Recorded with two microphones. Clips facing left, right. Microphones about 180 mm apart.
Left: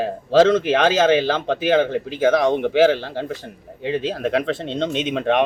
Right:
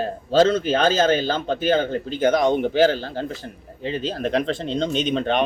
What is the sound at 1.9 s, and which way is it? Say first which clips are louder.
Speech: left 2 dB; 10° left (ahead or behind).